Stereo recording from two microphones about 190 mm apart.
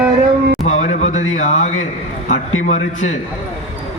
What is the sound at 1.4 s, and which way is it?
A man's voice, 40° left (ahead or behind).